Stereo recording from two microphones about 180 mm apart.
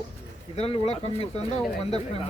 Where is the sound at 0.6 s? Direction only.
35° left (ahead or behind).